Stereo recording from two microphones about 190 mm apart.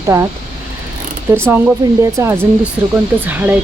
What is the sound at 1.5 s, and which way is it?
Speech, 10° right (ahead or behind).